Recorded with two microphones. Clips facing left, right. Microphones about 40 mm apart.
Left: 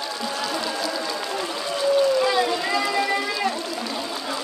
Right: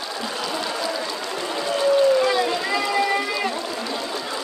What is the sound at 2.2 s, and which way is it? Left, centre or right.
Run, centre.